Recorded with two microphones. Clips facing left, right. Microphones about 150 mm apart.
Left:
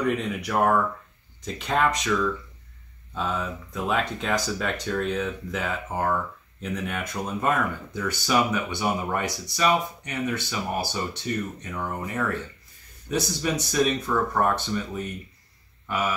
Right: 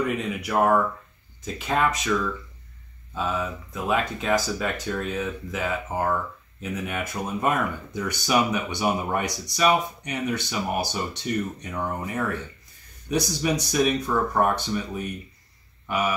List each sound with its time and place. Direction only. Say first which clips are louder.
0.0 s speech: left 1 dB; 5° right (ahead or behind)